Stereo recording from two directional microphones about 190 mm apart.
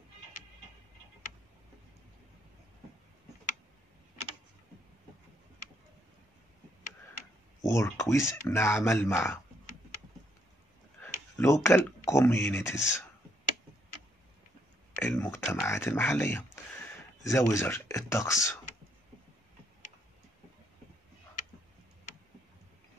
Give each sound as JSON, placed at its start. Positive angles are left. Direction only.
{"t": 7.6, "sound": "speech", "side_deg": 15}
{"t": 11.0, "sound": "a sound", "side_deg": 15}
{"t": 12.1, "sound": "speech", "side_deg": 15}
{"t": 15.0, "sound": "speech", "side_deg": 15}